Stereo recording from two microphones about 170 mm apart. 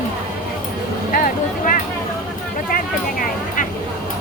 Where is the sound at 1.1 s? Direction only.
55° left (ahead or behind).